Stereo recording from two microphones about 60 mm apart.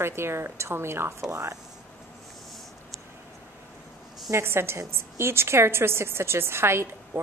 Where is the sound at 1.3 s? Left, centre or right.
Right.